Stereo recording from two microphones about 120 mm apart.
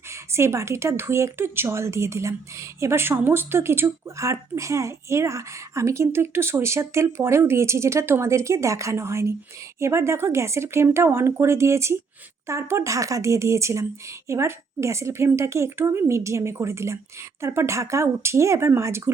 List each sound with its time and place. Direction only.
0.1 s speech: 25° right (ahead or behind)